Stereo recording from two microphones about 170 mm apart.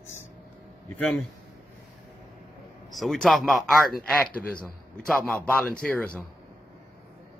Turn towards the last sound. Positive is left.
turn(degrees=10)  # may be behind; listen again after turning